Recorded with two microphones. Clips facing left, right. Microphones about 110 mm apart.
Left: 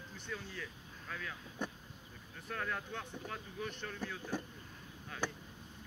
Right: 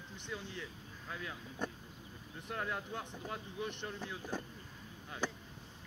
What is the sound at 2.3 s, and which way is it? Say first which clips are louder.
Speech: right 1 dB; 20° right (ahead or behind).